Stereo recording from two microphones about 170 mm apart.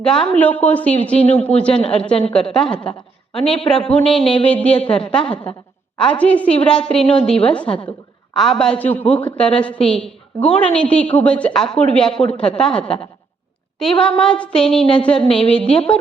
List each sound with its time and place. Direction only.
0.3 s a woman's voice: 10° left (ahead or behind)
3.4 s speech: 35° left (ahead or behind)
3.7 s a woman's voice: 5° left (ahead or behind)
14.0 s a woman's voice: 5° left (ahead or behind)